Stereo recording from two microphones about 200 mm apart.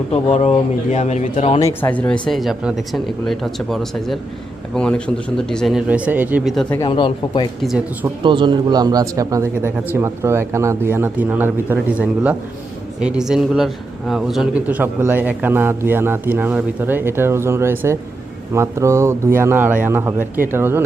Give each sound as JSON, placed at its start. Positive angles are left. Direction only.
{"t": 0.1, "sound": "speech", "side_deg": 35}
{"t": 1.6, "sound": "speech", "side_deg": 10}
{"t": 6.6, "sound": "speech", "side_deg": 10}
{"t": 6.8, "sound": "speech", "side_deg": 25}
{"t": 8.2, "sound": "a man's voice", "side_deg": -25}